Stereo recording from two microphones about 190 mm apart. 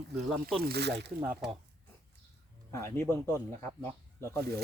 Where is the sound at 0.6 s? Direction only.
60° right (ahead or behind).